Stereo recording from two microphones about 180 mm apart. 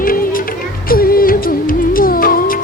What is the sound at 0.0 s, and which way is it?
Music, 50° left (ahead or behind).